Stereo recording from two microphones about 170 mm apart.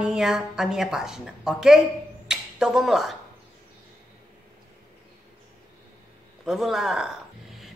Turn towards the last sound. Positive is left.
turn(degrees=-5)  # may be behind; listen again after turning